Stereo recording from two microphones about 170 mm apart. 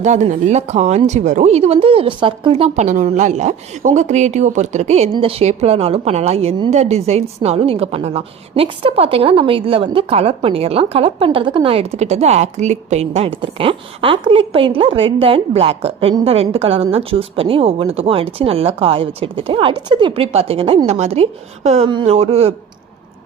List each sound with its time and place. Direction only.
0.0 s a woman's voice: 45° right (ahead or behind)